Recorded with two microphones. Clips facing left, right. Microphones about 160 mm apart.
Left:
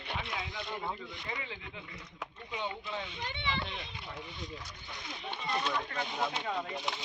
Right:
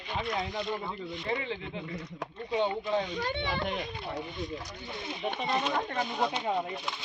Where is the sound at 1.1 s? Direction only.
25° right (ahead or behind).